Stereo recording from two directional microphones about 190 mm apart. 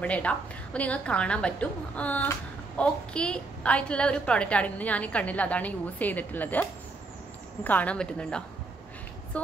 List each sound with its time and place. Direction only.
0.0 s a woman's voice: 5° left (ahead or behind)
7.6 s a woman's voice: 10° left (ahead or behind)